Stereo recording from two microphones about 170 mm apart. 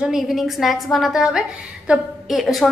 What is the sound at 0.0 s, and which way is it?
A woman's voice, centre (ahead or behind).